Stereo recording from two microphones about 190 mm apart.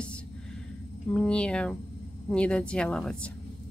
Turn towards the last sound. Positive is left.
turn(degrees=5)  # may be behind; listen again after turning